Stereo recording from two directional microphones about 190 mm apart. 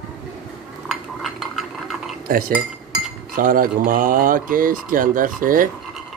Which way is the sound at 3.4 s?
50° right (ahead or behind).